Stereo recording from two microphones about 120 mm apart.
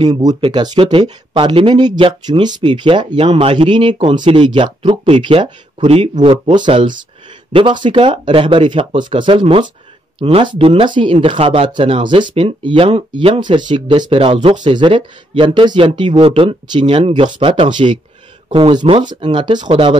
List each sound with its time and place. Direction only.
0.1 s speech: 30° right (ahead or behind)
0.4 s speech: 40° right (ahead or behind)